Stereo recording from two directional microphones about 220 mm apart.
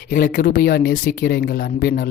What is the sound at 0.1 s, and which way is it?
Speech, 40° left (ahead or behind).